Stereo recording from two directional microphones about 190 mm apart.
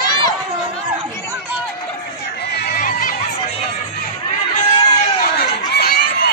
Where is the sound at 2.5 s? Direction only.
55° left (ahead or behind).